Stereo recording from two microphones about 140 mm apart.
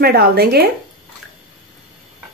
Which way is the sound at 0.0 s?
90° right.